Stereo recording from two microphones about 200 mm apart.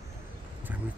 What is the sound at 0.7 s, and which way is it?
Vehicle, 10° right (ahead or behind).